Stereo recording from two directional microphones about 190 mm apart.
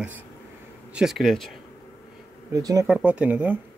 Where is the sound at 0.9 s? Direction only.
Centre (ahead or behind).